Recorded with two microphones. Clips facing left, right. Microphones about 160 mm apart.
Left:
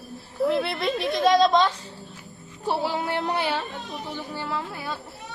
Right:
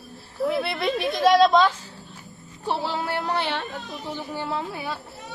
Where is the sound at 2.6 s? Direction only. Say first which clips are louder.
Left 1 dB; 10° left (ahead or behind).